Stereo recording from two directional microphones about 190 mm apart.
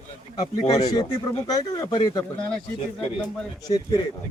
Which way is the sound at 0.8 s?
20° left (ahead or behind).